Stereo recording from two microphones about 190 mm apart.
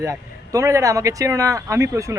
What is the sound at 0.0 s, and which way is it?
Speech, 15° right (ahead or behind).